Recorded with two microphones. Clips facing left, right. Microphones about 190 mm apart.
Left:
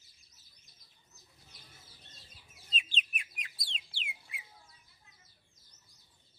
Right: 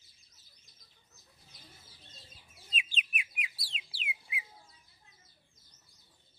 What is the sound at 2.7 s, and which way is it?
Bird, 10° right (ahead or behind).